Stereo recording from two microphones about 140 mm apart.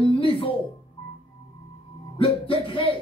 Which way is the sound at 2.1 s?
40° left (ahead or behind).